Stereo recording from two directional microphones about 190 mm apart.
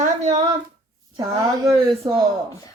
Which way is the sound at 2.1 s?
25° right (ahead or behind).